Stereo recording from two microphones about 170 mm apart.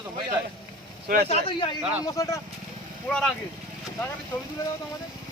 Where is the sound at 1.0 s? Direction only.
65° right (ahead or behind).